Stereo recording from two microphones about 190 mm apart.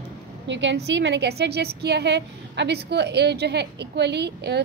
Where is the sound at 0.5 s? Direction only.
70° right (ahead or behind).